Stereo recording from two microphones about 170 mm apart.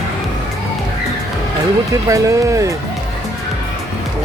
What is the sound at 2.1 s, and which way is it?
Speech, 20° right (ahead or behind).